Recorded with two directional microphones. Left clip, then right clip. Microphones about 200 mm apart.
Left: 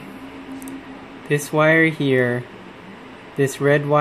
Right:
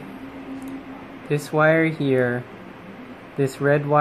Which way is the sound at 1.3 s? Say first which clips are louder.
Left 2 dB; 20° left (ahead or behind).